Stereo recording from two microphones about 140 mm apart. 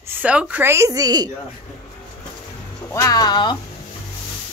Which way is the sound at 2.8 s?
20° left (ahead or behind).